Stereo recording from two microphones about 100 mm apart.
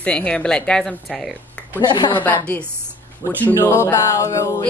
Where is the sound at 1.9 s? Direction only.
55° left (ahead or behind).